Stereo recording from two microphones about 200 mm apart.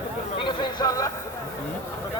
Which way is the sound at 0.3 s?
25° left (ahead or behind).